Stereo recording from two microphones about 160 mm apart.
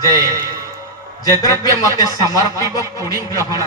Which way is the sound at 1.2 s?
25° left (ahead or behind).